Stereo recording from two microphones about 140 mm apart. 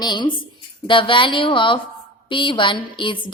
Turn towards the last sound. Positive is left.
turn(degrees=35)  # may be behind; listen again after turning